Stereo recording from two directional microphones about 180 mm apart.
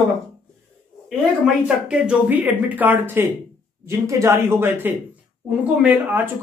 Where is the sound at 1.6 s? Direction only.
5° right (ahead or behind).